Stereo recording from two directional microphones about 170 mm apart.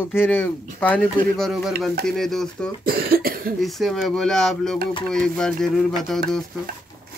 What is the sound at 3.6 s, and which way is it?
Speech, centre (ahead or behind).